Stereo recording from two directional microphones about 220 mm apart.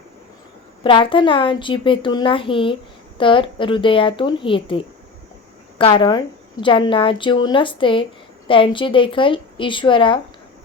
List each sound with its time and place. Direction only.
0.9 s a woman's voice: 20° left (ahead or behind)